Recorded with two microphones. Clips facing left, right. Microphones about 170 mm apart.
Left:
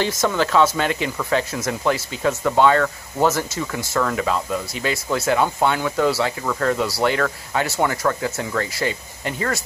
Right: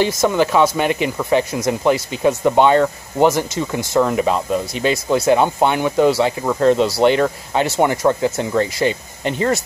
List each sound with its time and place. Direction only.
0.0 s speech: 15° right (ahead or behind)